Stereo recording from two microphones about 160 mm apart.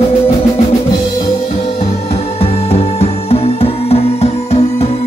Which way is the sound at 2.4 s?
40° left (ahead or behind).